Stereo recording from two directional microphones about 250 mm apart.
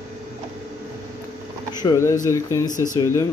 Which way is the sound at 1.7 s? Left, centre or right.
Centre.